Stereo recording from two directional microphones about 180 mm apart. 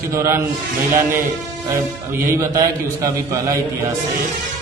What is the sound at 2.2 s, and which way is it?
A man's voice, 15° right (ahead or behind).